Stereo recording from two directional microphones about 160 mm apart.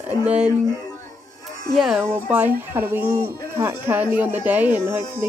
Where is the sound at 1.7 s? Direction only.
Centre (ahead or behind).